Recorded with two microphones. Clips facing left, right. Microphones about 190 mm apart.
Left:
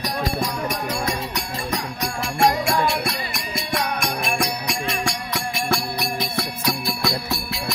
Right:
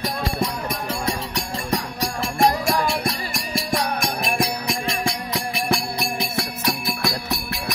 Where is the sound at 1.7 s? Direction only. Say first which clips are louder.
Right 3 dB; 35° right (ahead or behind).